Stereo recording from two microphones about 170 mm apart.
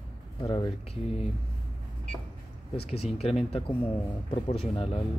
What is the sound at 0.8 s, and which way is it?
Speech, 35° left (ahead or behind).